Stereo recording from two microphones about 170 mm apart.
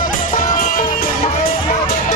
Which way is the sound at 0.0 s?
50° left (ahead or behind).